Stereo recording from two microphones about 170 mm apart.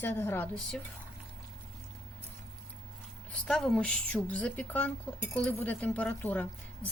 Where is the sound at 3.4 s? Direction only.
5° left (ahead or behind).